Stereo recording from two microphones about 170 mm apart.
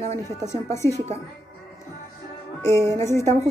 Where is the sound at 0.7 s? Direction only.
15° left (ahead or behind).